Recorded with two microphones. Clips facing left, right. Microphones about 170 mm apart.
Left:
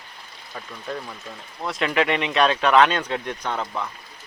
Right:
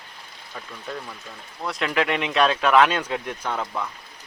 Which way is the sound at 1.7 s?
Centre (ahead or behind).